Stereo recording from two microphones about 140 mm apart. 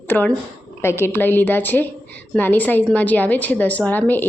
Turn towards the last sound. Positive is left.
turn(degrees=15)  # may be behind; listen again after turning